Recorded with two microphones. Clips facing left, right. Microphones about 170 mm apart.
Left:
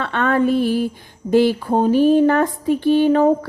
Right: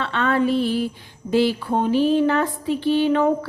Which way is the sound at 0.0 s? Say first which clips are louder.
Left 3 dB; 50° left (ahead or behind).